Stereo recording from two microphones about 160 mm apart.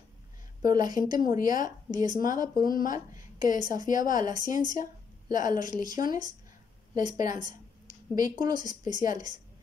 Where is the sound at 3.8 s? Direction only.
55° left (ahead or behind).